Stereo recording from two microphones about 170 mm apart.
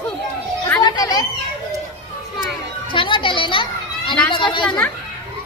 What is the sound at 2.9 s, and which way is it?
A child's voice, 30° left (ahead or behind).